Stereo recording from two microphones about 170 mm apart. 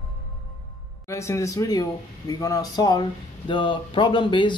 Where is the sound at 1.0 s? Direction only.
15° left (ahead or behind).